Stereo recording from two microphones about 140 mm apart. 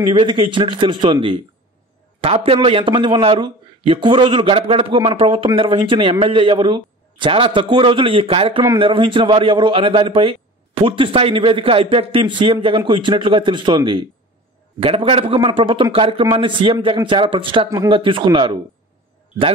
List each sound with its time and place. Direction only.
0.1 s a man's voice: 40° right (ahead or behind)